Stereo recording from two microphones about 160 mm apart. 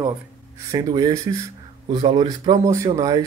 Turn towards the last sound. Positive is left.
turn(degrees=-20)  # may be behind; listen again after turning